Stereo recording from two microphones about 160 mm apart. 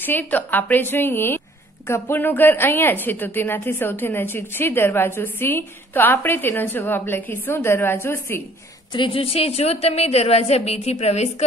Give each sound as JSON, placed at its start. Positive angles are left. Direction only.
{"t": 0.0, "sound": "a woman's voice", "side_deg": 10}
{"t": 8.9, "sound": "a woman's voice", "side_deg": 35}